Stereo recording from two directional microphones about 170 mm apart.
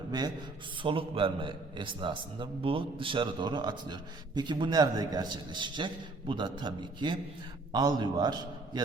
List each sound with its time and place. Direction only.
0.1 s a man's voice: 25° right (ahead or behind)